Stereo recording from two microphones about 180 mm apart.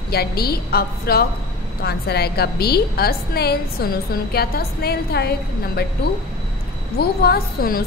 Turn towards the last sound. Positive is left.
turn(degrees=55)  # may be behind; listen again after turning